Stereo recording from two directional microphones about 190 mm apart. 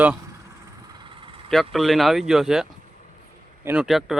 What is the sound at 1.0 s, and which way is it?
Vehicle, 25° right (ahead or behind).